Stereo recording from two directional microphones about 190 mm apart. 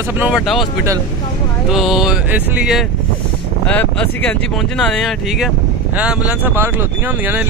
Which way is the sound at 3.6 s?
10° left (ahead or behind).